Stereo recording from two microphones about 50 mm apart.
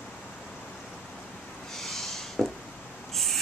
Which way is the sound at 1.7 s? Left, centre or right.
Centre.